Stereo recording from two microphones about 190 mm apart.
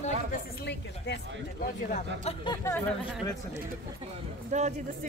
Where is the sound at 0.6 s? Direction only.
65° left (ahead or behind).